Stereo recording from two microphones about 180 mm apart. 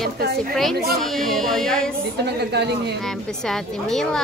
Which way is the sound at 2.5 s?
65° right (ahead or behind).